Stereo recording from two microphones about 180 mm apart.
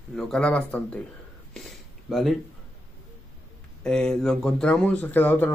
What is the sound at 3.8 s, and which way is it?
Speech, 5° left (ahead or behind).